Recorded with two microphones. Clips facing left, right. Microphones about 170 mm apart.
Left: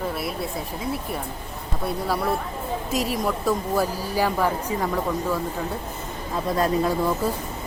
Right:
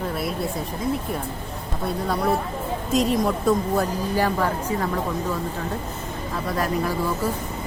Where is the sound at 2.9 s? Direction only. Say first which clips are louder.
Right 5 dB; 5° left (ahead or behind).